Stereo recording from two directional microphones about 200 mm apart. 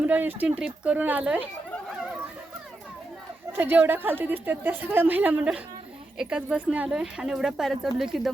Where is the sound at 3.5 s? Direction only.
10° right (ahead or behind).